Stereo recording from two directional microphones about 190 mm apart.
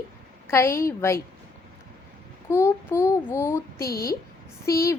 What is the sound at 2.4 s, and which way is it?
A woman's voice, 10° left (ahead or behind).